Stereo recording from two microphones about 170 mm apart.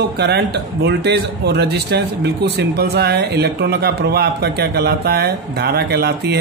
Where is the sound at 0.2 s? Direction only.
85° right.